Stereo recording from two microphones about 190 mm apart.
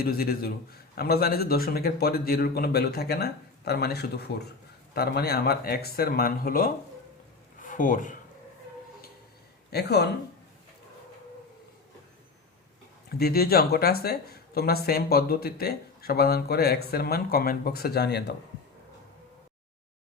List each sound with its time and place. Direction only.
0.0 s speech: 55° left (ahead or behind)
9.6 s speech: 60° left (ahead or behind)
13.1 s speech: 55° left (ahead or behind)